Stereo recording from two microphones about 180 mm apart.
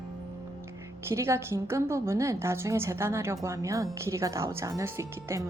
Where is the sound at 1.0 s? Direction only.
15° right (ahead or behind).